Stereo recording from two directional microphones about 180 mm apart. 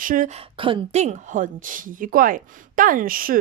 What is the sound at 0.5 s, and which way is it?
Speech, 35° right (ahead or behind).